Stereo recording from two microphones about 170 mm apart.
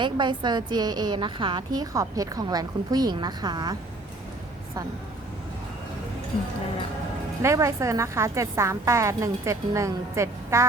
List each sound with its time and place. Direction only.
0.0 s a woman's voice: 25° right (ahead or behind)
7.4 s a woman's voice: 15° right (ahead or behind)